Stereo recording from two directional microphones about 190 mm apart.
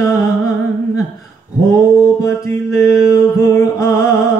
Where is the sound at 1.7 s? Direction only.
15° left (ahead or behind).